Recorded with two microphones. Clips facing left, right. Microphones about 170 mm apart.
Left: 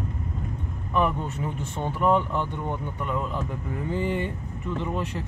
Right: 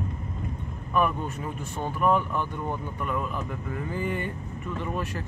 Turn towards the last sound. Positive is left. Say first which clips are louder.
# left 2 dB
turn(degrees=20)  # may be behind; listen again after turning